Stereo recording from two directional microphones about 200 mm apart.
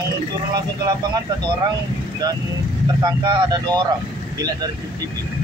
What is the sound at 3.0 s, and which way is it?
Speech, 20° right (ahead or behind).